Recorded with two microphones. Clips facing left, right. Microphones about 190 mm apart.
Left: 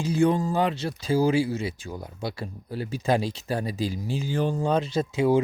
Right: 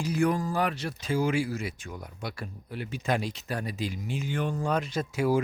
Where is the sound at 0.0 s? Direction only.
25° left (ahead or behind).